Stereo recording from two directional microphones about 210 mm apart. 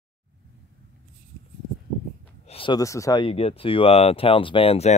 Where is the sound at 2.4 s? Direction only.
25° left (ahead or behind).